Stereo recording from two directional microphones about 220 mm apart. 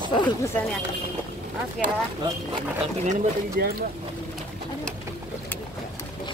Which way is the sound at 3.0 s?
30° right (ahead or behind).